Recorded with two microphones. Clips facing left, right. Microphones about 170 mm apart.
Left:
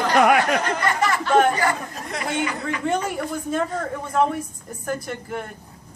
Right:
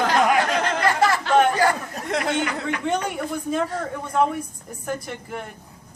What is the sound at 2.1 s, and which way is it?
Speech, 70° right (ahead or behind).